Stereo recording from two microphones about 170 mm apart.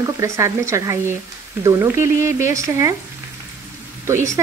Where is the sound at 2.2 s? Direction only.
15° right (ahead or behind).